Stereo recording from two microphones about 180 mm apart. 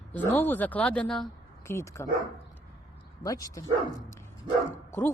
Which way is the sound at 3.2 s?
20° left (ahead or behind).